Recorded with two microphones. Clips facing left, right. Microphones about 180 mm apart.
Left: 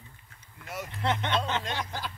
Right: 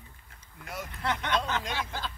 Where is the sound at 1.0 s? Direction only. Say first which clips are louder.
Left 1 dB; 25° left (ahead or behind).